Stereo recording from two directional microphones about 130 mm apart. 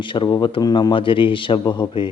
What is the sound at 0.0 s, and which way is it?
Speech, 40° left (ahead or behind).